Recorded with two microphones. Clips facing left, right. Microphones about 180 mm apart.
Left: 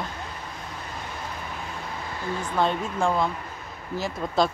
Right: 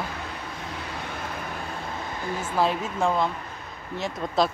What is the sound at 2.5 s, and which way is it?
Speech, 5° right (ahead or behind).